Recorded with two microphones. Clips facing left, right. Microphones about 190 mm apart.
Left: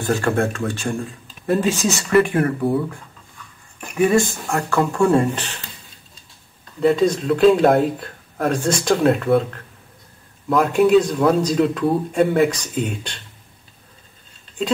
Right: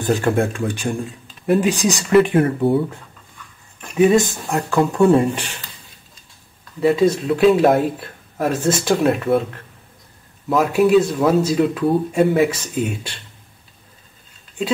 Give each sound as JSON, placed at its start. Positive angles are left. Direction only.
{"t": 0.0, "sound": "speech", "side_deg": -15}
{"t": 4.0, "sound": "speech", "side_deg": -20}
{"t": 6.8, "sound": "speech", "side_deg": -5}
{"t": 10.5, "sound": "speech", "side_deg": -5}